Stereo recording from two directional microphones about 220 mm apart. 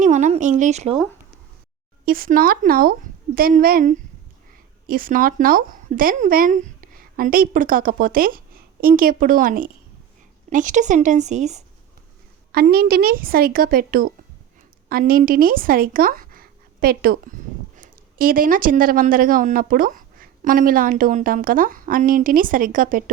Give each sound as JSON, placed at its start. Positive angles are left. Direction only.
{"t": 0.0, "sound": "a sound", "side_deg": -35}
{"t": 2.0, "sound": "speech", "side_deg": -40}
{"t": 12.5, "sound": "a woman's voice", "side_deg": -45}